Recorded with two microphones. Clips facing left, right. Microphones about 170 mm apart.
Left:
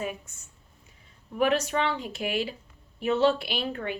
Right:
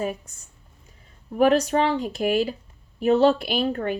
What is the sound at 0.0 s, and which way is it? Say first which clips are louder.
Speech: right 5 dB; 35° right (ahead or behind).